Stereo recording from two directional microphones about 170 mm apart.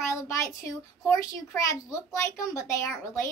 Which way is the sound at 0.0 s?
15° left (ahead or behind).